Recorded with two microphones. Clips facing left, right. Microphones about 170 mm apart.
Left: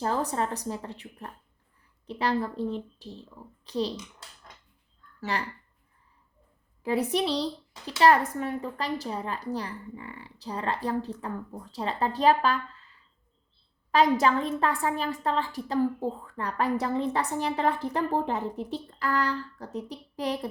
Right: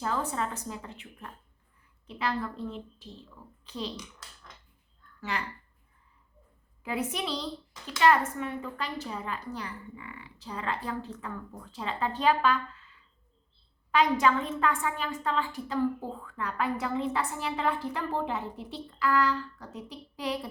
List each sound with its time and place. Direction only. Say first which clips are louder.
0.0 s a woman's voice: left 3 dB; 40° left (ahead or behind)
5.3 s a woman's voice: left 3 dB; 35° left (ahead or behind)
6.8 s a woman's voice: left 6 dB; 35° left (ahead or behind)
13.9 s a woman's voice: left 2 dB; 40° left (ahead or behind)